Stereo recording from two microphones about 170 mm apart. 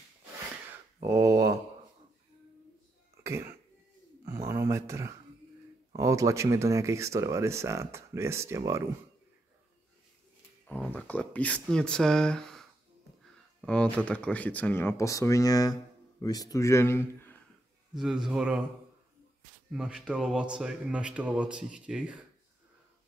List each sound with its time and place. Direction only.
1.0 s a sound: 20° right (ahead or behind)
4.2 s a sound: 20° right (ahead or behind)
5.9 s speech: 20° right (ahead or behind)
10.7 s speech: 10° left (ahead or behind)
17.9 s speech: 5° right (ahead or behind)
19.7 s speech: 5° right (ahead or behind)